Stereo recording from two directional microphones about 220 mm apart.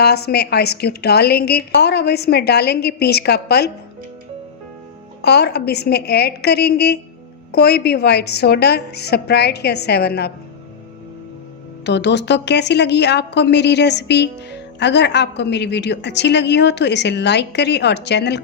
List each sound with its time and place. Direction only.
0.0 s a woman's voice: 45° left (ahead or behind)
5.2 s a woman's voice: 50° left (ahead or behind)
11.9 s a woman's voice: 50° left (ahead or behind)